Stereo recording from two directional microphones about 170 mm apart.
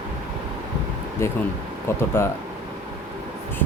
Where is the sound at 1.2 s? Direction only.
15° left (ahead or behind).